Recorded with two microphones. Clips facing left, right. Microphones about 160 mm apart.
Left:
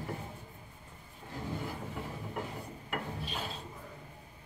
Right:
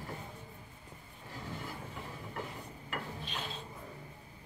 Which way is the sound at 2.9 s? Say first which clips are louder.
Left 3 dB; 5° left (ahead or behind).